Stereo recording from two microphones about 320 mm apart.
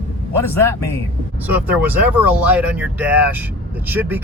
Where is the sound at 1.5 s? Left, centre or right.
Centre.